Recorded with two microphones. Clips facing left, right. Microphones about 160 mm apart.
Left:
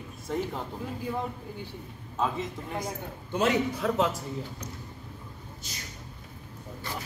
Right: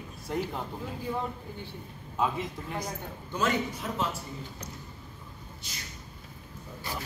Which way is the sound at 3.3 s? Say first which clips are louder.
Left 4 dB; 60° left (ahead or behind).